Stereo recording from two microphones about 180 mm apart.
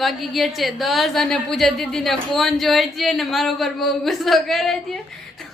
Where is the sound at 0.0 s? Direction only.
Centre (ahead or behind).